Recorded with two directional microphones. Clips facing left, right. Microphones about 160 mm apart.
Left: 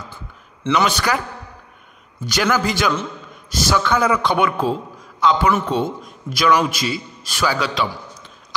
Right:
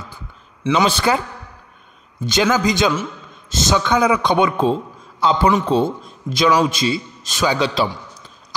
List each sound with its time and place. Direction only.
0.8 s a man's voice: 25° right (ahead or behind)
2.2 s a man's voice: 20° right (ahead or behind)